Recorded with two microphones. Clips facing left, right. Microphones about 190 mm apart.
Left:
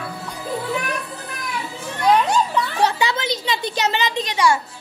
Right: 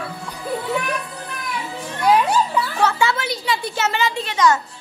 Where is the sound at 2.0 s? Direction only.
5° right (ahead or behind).